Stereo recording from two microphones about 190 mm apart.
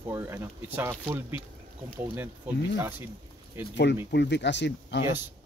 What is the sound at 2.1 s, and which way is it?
Speech, 10° right (ahead or behind).